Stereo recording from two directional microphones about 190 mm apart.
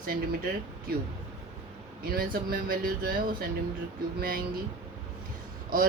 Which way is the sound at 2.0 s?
50° right (ahead or behind).